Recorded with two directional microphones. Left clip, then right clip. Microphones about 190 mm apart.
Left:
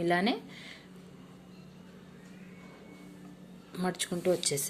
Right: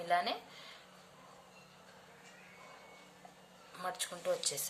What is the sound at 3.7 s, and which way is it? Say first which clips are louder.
Speech: left 6 dB; 35° left (ahead or behind).